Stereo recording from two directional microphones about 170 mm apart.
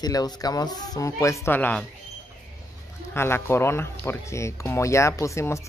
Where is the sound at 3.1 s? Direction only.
15° left (ahead or behind).